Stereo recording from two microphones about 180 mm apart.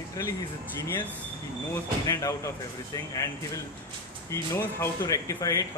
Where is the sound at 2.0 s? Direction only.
15° left (ahead or behind).